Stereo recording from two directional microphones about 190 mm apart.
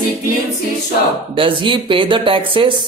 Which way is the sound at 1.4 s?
25° right (ahead or behind).